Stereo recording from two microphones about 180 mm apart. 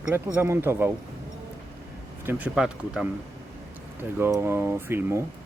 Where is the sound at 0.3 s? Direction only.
15° right (ahead or behind).